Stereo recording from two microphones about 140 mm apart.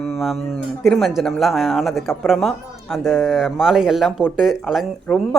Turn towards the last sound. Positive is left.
turn(degrees=10)  # may be behind; listen again after turning